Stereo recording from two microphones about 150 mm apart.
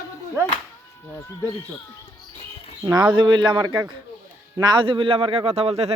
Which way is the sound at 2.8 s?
25° right (ahead or behind).